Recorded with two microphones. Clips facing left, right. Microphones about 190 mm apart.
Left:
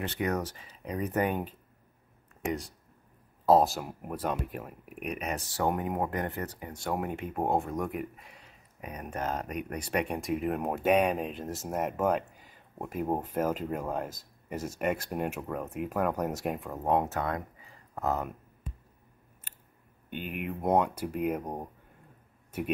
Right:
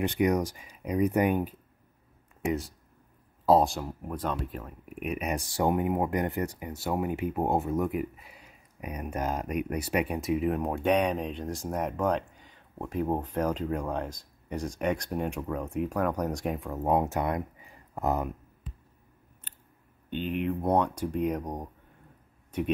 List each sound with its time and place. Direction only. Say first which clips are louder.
0.0 s speech: right 6 dB; 15° right (ahead or behind)
19.5 s scissors: right 1 dB; 5° left (ahead or behind)
20.1 s speech: right 6 dB; 10° left (ahead or behind)